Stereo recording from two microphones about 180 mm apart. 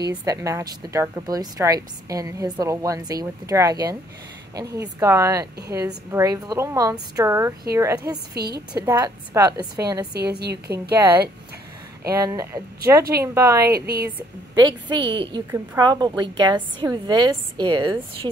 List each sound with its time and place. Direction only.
0.2 s a woman's voice: 20° right (ahead or behind)
10.4 s a woman's voice: 65° right (ahead or behind)
12.1 s a woman's voice: 15° right (ahead or behind)
13.7 s a woman's voice: 60° right (ahead or behind)
14.5 s speech: 25° right (ahead or behind)